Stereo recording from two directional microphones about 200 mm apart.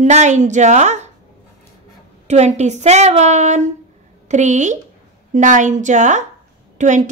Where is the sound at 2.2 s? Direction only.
35° right (ahead or behind).